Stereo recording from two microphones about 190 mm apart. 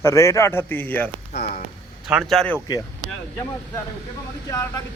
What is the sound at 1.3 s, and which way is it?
Speech, 50° left (ahead or behind).